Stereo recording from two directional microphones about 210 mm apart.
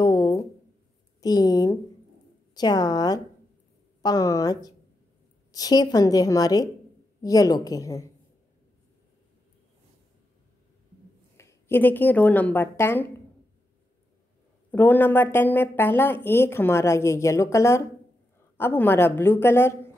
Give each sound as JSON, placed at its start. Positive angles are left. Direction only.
{"t": 0.0, "sound": "a sound", "side_deg": 20}
{"t": 1.2, "sound": "a woman's voice", "side_deg": 20}
{"t": 11.3, "sound": "a woman's voice", "side_deg": 10}
{"t": 14.7, "sound": "speech", "side_deg": 10}